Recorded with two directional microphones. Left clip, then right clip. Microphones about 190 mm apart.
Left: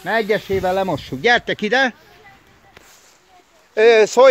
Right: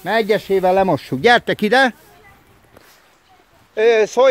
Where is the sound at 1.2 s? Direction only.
25° right (ahead or behind).